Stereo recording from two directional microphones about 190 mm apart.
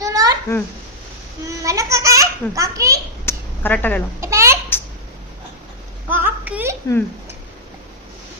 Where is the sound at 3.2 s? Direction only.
10° left (ahead or behind).